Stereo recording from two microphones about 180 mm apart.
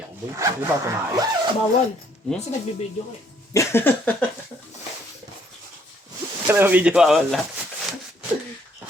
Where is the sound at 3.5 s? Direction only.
15° left (ahead or behind).